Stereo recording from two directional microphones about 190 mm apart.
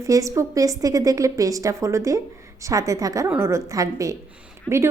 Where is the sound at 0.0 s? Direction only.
15° right (ahead or behind).